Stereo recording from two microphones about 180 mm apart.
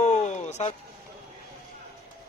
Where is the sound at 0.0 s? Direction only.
40° left (ahead or behind).